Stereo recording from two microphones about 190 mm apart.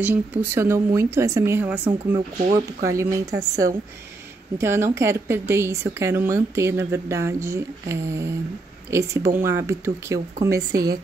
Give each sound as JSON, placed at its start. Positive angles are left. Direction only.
{"t": 0.0, "sound": "speech", "side_deg": -10}
{"t": 1.9, "sound": "a woman's voice", "side_deg": -25}